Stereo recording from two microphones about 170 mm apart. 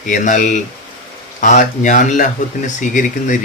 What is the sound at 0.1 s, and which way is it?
Speech, 50° left (ahead or behind).